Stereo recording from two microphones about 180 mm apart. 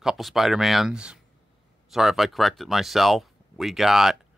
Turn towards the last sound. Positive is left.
turn(degrees=0)  # may be behind; listen again after turning